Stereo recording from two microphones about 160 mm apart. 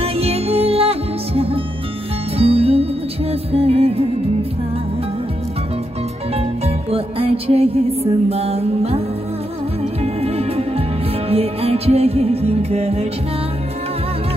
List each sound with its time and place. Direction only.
0.0 s music: 40° right (ahead or behind)
6.9 s music: 35° right (ahead or behind)
10.2 s music: 40° right (ahead or behind)